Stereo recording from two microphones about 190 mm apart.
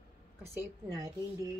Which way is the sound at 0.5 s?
15° right (ahead or behind).